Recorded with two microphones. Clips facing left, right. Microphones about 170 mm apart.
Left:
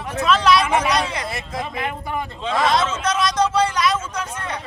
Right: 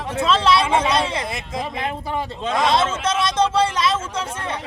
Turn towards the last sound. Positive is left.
turn(degrees=-30)  # may be behind; listen again after turning